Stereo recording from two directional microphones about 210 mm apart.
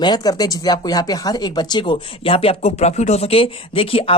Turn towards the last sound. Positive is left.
turn(degrees=25)  # may be behind; listen again after turning